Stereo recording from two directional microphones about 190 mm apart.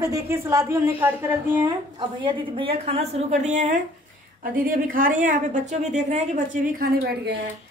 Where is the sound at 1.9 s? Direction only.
25° right (ahead or behind); by 7.3 s 55° right (ahead or behind).